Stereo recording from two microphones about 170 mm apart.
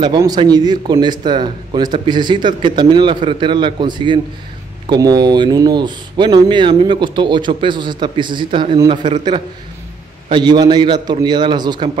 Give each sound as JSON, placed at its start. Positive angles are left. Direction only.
{"t": 0.0, "sound": "speech", "side_deg": -25}